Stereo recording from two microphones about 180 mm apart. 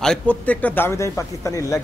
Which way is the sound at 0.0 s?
5° left (ahead or behind).